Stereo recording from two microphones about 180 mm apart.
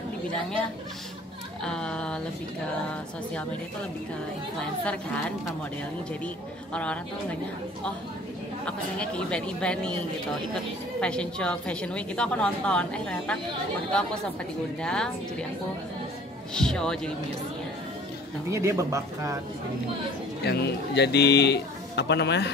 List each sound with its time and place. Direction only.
0.3 s a woman's voice: 5° left (ahead or behind)
4.6 s a woman's voice: 5° left (ahead or behind)
6.2 s a woman's voice: 5° left (ahead or behind)
8.6 s a woman's voice: 5° left (ahead or behind)
14.8 s a woman's voice: 5° left (ahead or behind)
16.5 s a woman's voice: 5° left (ahead or behind)
18.5 s speech: 15° right (ahead or behind)
20.4 s a man's voice: 70° left (ahead or behind)